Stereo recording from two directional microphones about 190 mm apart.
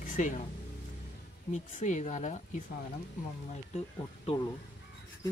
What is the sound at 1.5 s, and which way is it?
Speech, 40° left (ahead or behind).